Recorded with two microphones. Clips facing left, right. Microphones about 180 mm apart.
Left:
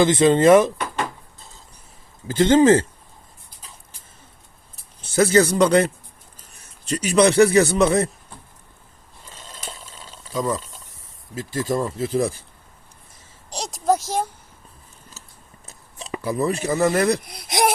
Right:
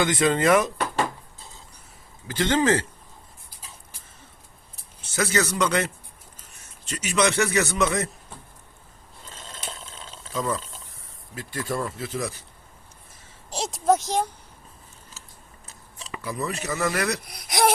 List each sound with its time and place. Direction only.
0.0 s speech: 25° left (ahead or behind)
2.2 s speech: 25° left (ahead or behind)
5.1 s speech: 30° left (ahead or behind)
9.3 s a sound: centre (ahead or behind)
10.5 s speech: centre (ahead or behind)
11.9 s speech: 30° left (ahead or behind)
13.5 s speech: centre (ahead or behind)
16.0 s a sound: 35° left (ahead or behind)
16.8 s speech: 30° left (ahead or behind)